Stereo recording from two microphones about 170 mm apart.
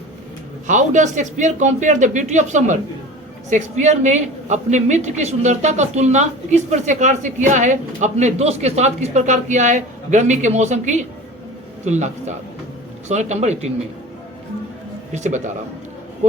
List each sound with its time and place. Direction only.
0.7 s a woman's voice: 45° right (ahead or behind)
15.1 s a woman's voice: 45° right (ahead or behind)